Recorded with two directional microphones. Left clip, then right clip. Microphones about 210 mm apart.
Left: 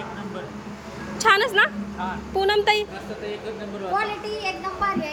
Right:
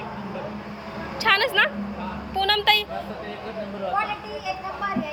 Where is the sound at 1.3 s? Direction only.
15° left (ahead or behind).